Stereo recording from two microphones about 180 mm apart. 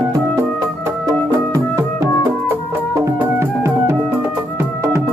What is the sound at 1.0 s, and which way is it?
Music, 15° right (ahead or behind).